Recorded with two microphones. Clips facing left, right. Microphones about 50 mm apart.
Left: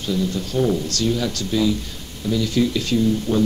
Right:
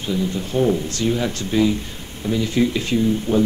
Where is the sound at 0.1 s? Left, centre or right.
Right.